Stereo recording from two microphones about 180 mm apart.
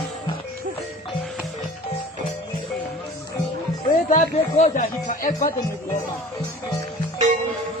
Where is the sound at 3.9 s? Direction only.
45° left (ahead or behind).